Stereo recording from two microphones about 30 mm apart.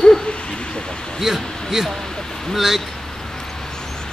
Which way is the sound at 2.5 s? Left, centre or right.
Centre.